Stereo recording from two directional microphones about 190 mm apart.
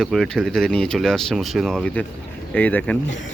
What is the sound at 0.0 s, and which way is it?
Speech, centre (ahead or behind).